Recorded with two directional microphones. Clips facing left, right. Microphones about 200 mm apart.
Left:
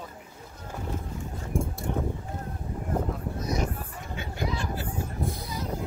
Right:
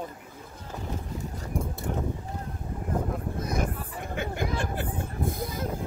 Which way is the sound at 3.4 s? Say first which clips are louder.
Left 1 dB; 55° right (ahead or behind).